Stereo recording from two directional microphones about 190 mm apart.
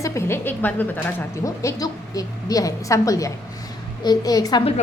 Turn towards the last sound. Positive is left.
turn(degrees=20)  # may be behind; listen again after turning